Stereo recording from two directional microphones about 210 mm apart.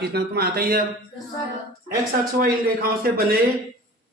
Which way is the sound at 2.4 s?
50° right (ahead or behind).